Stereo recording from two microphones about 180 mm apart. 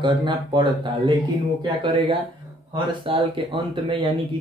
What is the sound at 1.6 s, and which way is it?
A man's voice, 30° right (ahead or behind).